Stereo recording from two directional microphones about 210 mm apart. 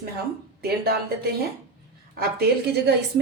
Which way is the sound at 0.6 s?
50° right (ahead or behind).